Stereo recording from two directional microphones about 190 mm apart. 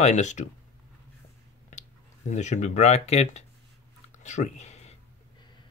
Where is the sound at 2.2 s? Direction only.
40° left (ahead or behind).